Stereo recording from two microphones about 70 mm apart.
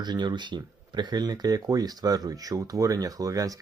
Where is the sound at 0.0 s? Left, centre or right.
Right.